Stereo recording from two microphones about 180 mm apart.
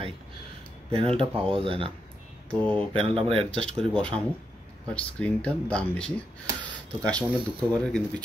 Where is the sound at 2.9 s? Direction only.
30° right (ahead or behind).